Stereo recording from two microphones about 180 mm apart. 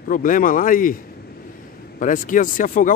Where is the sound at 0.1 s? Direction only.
50° left (ahead or behind).